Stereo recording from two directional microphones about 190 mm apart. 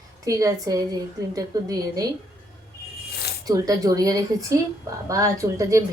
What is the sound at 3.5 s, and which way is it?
A woman's voice, 20° right (ahead or behind).